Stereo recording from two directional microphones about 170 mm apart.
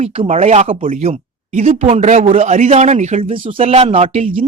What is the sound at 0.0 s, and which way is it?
Speech, 40° right (ahead or behind).